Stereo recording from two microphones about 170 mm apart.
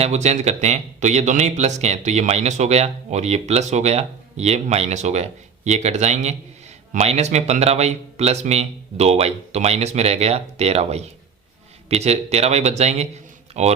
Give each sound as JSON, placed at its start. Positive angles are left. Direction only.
{"t": 0.0, "sound": "speech", "side_deg": -40}